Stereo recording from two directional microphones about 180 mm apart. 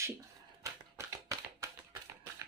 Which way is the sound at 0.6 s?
15° right (ahead or behind).